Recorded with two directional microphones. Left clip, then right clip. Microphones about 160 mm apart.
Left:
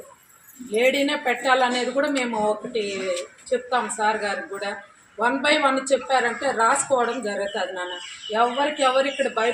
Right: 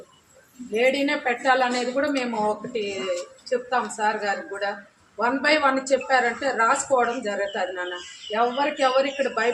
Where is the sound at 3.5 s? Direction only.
Centre (ahead or behind).